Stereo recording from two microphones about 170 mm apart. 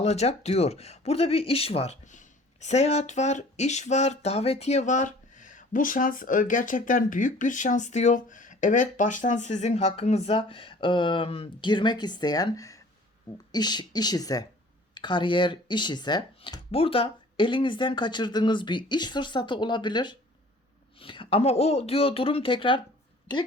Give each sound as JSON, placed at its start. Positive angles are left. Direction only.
{"t": 0.0, "sound": "speech", "side_deg": 40}